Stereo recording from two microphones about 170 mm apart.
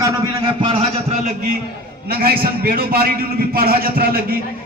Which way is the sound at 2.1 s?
65° right (ahead or behind).